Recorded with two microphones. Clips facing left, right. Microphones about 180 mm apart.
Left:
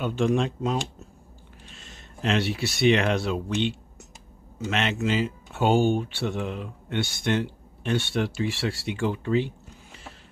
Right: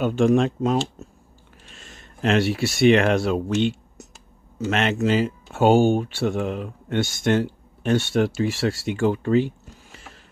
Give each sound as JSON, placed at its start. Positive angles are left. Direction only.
{"t": 0.0, "sound": "speech", "side_deg": -45}
{"t": 1.8, "sound": "speech", "side_deg": -50}